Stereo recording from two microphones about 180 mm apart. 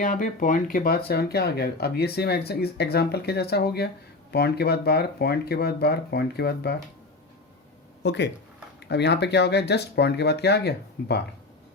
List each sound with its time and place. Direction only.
0.0 s speech: 45° left (ahead or behind); by 6.7 s 65° left (ahead or behind)
8.0 s speech: 75° left (ahead or behind)